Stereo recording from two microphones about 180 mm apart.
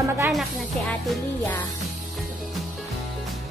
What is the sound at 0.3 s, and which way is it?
Speech, centre (ahead or behind).